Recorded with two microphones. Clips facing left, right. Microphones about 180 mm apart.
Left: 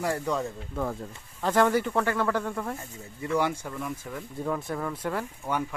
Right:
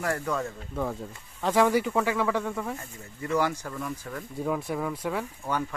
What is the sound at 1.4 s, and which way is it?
Speech, centre (ahead or behind).